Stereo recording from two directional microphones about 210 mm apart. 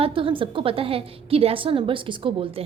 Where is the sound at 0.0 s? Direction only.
25° right (ahead or behind).